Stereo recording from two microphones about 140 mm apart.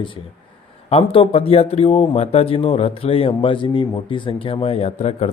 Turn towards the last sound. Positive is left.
turn(degrees=50)  # may be behind; listen again after turning